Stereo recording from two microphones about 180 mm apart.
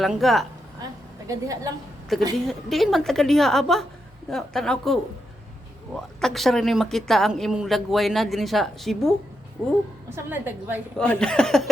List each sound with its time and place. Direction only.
0.0 s speech: centre (ahead or behind)
1.3 s a woman's voice: 20° right (ahead or behind)
2.1 s speech: centre (ahead or behind)
9.6 s a woman's voice: 10° right (ahead or behind)
10.9 s speech: 5° left (ahead or behind)